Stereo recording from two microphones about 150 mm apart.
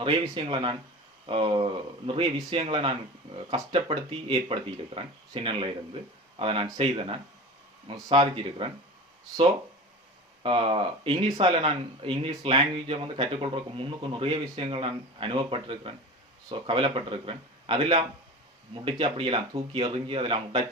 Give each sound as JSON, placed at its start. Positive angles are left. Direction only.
{"t": 0.0, "sound": "speech", "side_deg": -35}
{"t": 10.4, "sound": "speech", "side_deg": -40}